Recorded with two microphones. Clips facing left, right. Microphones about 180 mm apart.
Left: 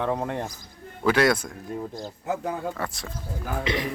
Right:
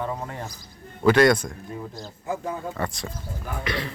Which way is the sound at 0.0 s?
65° left (ahead or behind).